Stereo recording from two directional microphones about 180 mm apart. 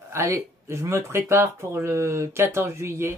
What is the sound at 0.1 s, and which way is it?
Speech, 15° right (ahead or behind).